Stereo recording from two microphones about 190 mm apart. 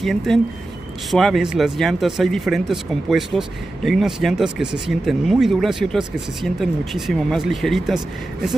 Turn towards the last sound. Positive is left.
turn(degrees=0)  # may be behind; listen again after turning